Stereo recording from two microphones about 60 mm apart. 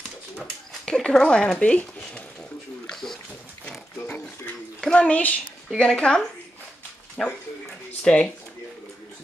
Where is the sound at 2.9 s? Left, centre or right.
Centre.